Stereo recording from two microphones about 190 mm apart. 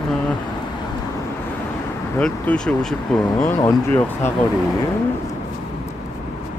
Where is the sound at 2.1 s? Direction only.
5° left (ahead or behind).